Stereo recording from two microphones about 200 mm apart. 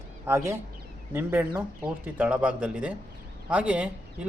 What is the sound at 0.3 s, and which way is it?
Speech, 15° right (ahead or behind).